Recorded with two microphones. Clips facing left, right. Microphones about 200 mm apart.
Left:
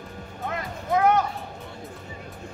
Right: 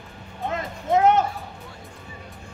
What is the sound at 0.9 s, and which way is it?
Music, 25° right (ahead or behind).